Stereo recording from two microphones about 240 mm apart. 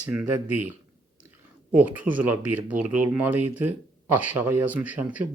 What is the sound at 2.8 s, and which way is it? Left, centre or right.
Speech, right.